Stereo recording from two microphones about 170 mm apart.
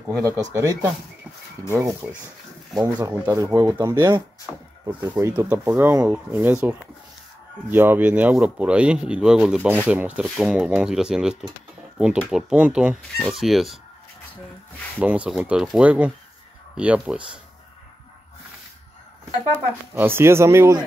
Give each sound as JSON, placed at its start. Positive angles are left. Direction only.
{"t": 0.2, "sound": "speech", "side_deg": -15}
{"t": 2.7, "sound": "speech", "side_deg": -5}
{"t": 15.0, "sound": "speech", "side_deg": -5}
{"t": 19.9, "sound": "speech", "side_deg": -10}